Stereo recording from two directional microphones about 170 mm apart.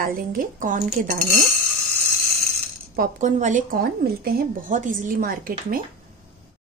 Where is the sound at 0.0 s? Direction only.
60° right (ahead or behind).